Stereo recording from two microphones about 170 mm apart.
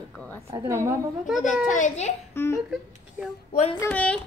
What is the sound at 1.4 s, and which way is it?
Speech, 45° left (ahead or behind).